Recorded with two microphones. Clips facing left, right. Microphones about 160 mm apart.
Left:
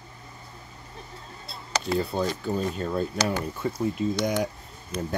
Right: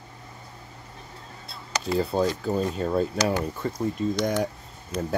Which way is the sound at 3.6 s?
10° left (ahead or behind).